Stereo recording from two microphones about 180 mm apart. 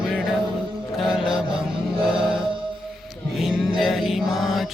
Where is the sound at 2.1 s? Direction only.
30° right (ahead or behind).